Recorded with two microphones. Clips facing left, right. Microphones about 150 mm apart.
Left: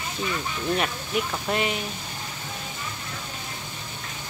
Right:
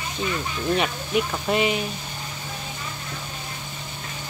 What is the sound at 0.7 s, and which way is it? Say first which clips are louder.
Speech: right 5 dB; 5° right (ahead or behind).